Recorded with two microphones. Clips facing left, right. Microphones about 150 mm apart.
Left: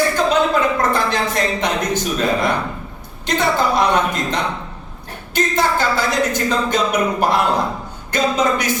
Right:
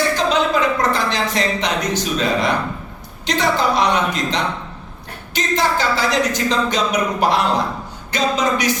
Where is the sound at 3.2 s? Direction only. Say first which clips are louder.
Even; 55° left (ahead or behind).